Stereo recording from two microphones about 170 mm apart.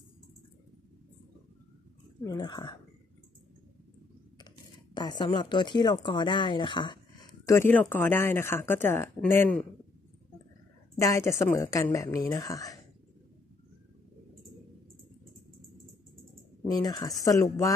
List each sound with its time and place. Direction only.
2.2 s a woman's voice: 25° left (ahead or behind)
4.9 s a woman's voice: 25° left (ahead or behind); by 9.7 s 10° left (ahead or behind)
11.0 s a woman's voice: 15° left (ahead or behind)
16.6 s a woman's voice: 25° left (ahead or behind)